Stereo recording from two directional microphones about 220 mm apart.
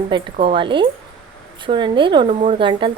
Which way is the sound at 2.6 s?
20° right (ahead or behind).